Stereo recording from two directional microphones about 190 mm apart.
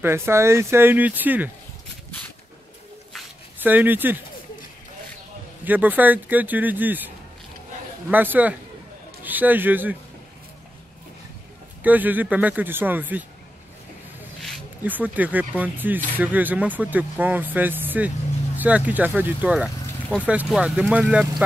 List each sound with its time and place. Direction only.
0.0 s speech: 15° right (ahead or behind)
3.6 s speech: 10° right (ahead or behind)
5.7 s speech: 10° right (ahead or behind)
8.1 s speech: 10° right (ahead or behind)
11.8 s speech: 10° right (ahead or behind)
14.9 s speech: 10° right (ahead or behind)